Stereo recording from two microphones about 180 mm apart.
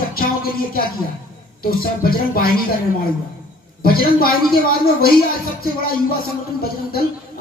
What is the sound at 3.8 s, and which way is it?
Speech, 55° left (ahead or behind).